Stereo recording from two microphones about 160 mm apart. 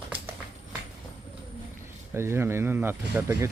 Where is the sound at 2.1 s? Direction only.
15° right (ahead or behind).